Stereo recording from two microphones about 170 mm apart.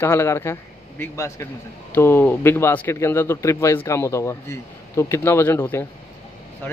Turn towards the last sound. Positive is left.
turn(degrees=10)  # may be behind; listen again after turning